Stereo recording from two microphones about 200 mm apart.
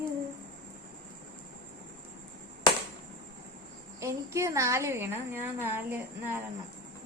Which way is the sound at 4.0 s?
15° right (ahead or behind).